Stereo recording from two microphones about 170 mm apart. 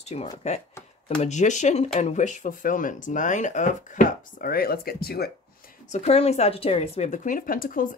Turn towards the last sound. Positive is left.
turn(degrees=55)  # may be behind; listen again after turning